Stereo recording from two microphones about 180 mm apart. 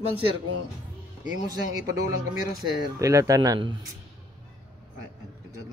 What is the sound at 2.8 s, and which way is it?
Speech, 20° right (ahead or behind).